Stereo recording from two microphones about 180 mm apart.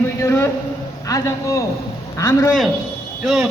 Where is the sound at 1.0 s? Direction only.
20° left (ahead or behind).